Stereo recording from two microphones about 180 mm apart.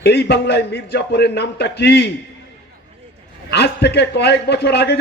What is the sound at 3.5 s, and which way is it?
A man's voice, 65° left (ahead or behind).